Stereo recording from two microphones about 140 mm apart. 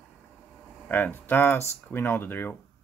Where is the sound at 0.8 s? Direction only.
15° left (ahead or behind).